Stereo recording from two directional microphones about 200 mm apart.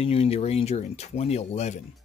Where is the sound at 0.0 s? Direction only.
30° left (ahead or behind).